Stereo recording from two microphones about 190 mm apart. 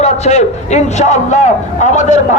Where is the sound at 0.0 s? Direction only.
35° left (ahead or behind).